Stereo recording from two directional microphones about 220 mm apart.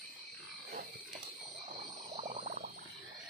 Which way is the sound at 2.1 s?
30° right (ahead or behind).